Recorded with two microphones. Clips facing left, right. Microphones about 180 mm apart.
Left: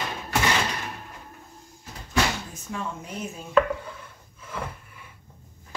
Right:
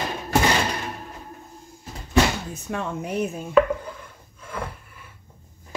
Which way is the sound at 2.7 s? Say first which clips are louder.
Right 6 dB; 65° right (ahead or behind).